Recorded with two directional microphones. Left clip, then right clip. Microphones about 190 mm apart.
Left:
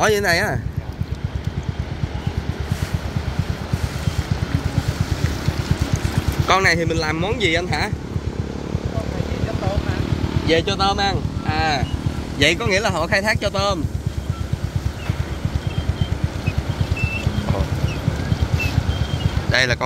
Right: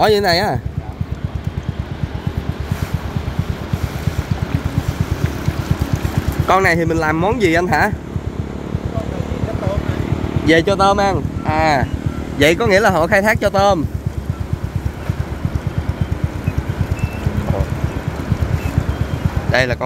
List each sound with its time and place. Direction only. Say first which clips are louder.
0.0 s speech: right 4 dB; 15° right (ahead or behind)
6.4 s speech: right 3 dB; 20° right (ahead or behind); by 7.8 s 45° right (ahead or behind)
10.4 s speech: right 6 dB; 55° right (ahead or behind)
12.4 s speech: right 5 dB; 30° right (ahead or behind)
19.5 s vehicle: right 2 dB; 5° left (ahead or behind)